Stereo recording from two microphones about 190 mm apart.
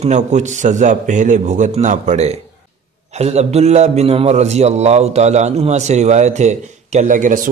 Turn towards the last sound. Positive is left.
turn(degrees=-45)  # may be behind; listen again after turning